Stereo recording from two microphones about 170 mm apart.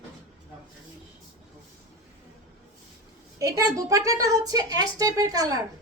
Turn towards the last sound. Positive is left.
turn(degrees=-20)  # may be behind; listen again after turning